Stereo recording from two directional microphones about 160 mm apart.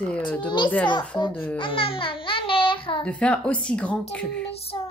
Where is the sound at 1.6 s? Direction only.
35° left (ahead or behind).